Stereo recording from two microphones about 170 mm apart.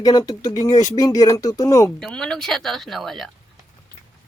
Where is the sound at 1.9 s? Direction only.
5° left (ahead or behind).